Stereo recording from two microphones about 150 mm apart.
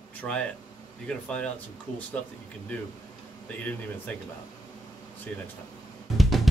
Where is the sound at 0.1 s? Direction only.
10° left (ahead or behind).